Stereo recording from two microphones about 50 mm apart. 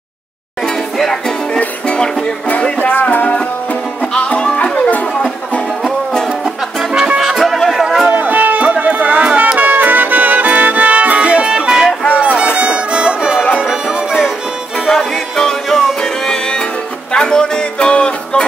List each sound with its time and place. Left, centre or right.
0.9 s music: centre
2.5 s music: left
4.1 s music: left
6.4 s music: centre
7.2 s music: centre
8.1 s music: right
11.4 s music: centre
12.1 s music: right
14.9 s music: centre